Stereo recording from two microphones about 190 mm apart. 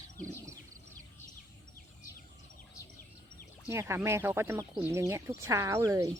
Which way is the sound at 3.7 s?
15° right (ahead or behind).